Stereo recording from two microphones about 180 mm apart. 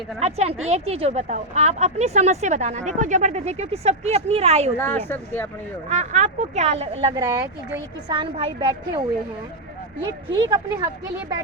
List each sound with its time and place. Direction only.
0.2 s speech: 35° right (ahead or behind)
4.8 s speech: 10° left (ahead or behind)
5.9 s speech: 40° right (ahead or behind)
7.2 s a woman's voice: 20° right (ahead or behind)
10.2 s a woman's voice: 25° right (ahead or behind)